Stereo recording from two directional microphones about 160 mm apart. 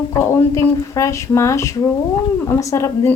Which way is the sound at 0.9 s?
20° left (ahead or behind).